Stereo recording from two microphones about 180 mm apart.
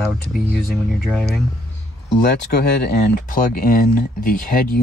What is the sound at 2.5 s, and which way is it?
Speech, 65° left (ahead or behind).